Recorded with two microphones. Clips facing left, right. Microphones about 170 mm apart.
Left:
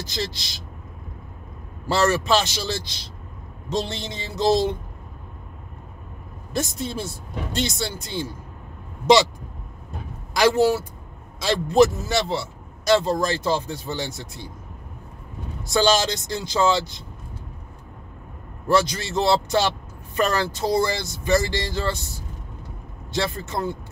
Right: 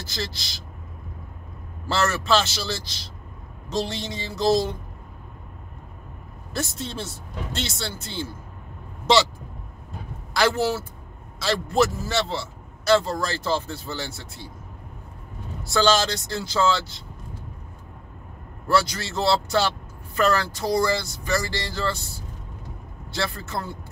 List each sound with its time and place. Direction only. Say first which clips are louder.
0.0 s a woman's voice: left 3 dB; 20° left (ahead or behind)
1.9 s speech: left 3 dB; 15° left (ahead or behind)
6.5 s speech: left 3 dB; 15° left (ahead or behind)
10.3 s speech: left 4 dB; 15° left (ahead or behind)
15.6 s speech: left 1 dB; 15° left (ahead or behind)
18.7 s speech: left 2 dB; 20° left (ahead or behind)